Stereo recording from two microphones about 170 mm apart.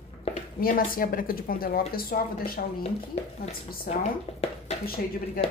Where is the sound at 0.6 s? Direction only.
55° left (ahead or behind).